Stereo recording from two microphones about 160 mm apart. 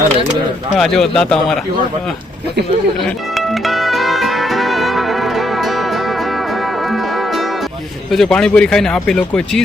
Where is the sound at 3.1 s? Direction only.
Centre (ahead or behind).